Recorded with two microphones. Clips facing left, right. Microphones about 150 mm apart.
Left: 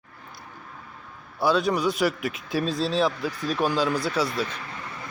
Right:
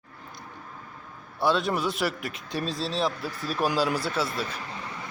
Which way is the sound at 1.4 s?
Centre (ahead or behind).